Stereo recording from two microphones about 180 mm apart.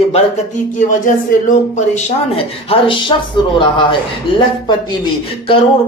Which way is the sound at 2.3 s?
30° left (ahead or behind).